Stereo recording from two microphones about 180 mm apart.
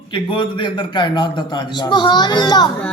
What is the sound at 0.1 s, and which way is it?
A man's voice, 25° left (ahead or behind).